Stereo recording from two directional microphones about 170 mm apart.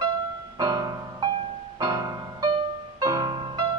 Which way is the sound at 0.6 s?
20° right (ahead or behind).